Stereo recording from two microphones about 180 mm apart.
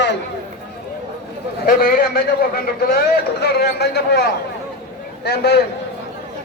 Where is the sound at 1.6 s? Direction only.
55° left (ahead or behind).